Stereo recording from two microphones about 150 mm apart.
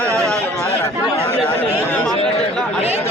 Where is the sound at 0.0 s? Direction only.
20° right (ahead or behind).